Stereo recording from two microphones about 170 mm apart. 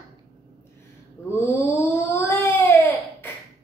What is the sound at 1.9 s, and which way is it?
Baby cry, 15° left (ahead or behind).